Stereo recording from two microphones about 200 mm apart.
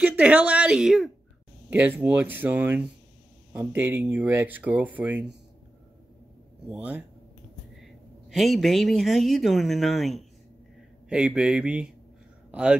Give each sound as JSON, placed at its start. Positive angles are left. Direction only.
{"t": 0.0, "sound": "speech", "side_deg": -5}
{"t": 6.7, "sound": "a woman's voice", "side_deg": -5}
{"t": 12.4, "sound": "a sound", "side_deg": -5}